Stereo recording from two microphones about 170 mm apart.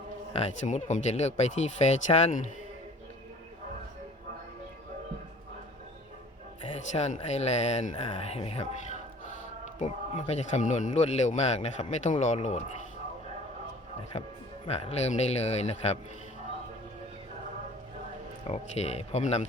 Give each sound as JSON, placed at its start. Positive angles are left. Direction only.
{"t": 0.3, "sound": "speech", "side_deg": 40}
{"t": 6.7, "sound": "speech", "side_deg": 40}
{"t": 9.7, "sound": "speech", "side_deg": 45}
{"t": 14.7, "sound": "speech", "side_deg": 40}
{"t": 18.4, "sound": "speech", "side_deg": 40}